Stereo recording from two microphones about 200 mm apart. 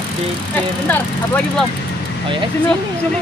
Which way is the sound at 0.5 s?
5° left (ahead or behind).